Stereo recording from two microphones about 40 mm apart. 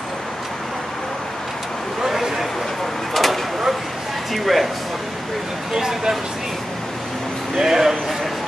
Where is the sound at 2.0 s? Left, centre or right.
Centre.